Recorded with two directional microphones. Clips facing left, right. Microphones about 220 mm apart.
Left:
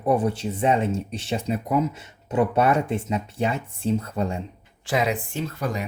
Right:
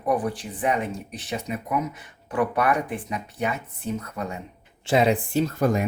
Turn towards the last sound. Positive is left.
turn(degrees=-50)  # may be behind; listen again after turning